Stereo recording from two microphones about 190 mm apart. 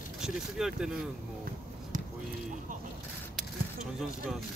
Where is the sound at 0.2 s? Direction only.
Centre (ahead or behind).